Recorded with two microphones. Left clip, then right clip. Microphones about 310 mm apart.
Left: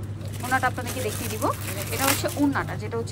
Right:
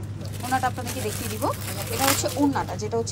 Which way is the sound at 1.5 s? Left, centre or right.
Centre.